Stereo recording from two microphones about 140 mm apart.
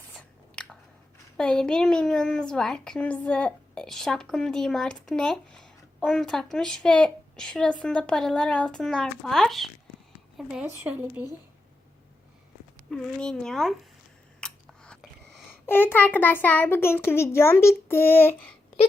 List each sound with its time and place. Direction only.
0.5 s biting: 5° left (ahead or behind)
1.4 s a child's voice: 5° left (ahead or behind)
12.9 s a child's voice: 5° left (ahead or behind)
14.4 s chewing: 5° left (ahead or behind)
15.6 s a child's voice: 15° left (ahead or behind)